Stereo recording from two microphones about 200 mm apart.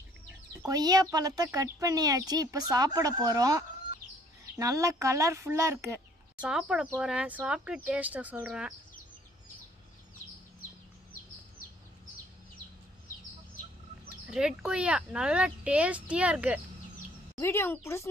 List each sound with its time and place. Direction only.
0.6 s a woman's voice: 20° right (ahead or behind)
14.3 s speech: 5° right (ahead or behind)
17.4 s speech: 10° left (ahead or behind)